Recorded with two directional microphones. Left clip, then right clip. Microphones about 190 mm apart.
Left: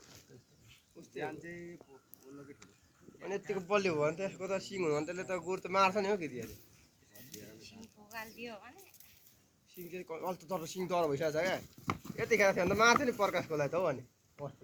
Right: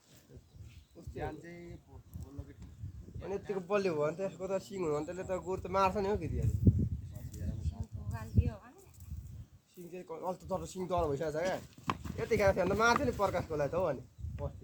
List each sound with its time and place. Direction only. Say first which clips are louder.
1.1 s speech: left 1 dB; 50° right (ahead or behind)
3.2 s speech: even; 80° right
7.3 s a sound: right 2 dB; 60° right (ahead or behind)
9.7 s speech: left 1 dB; 70° right (ahead or behind); by 11.6 s 85° right
12.1 s speech: left 1 dB; 70° right (ahead or behind)